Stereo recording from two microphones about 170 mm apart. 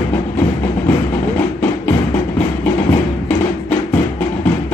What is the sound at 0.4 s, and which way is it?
Music, 10° left (ahead or behind).